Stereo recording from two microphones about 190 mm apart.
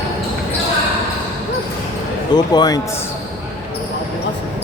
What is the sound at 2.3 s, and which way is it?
Speech, 20° left (ahead or behind).